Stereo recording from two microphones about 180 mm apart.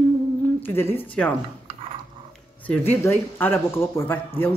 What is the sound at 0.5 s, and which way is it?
Speech, 10° left (ahead or behind).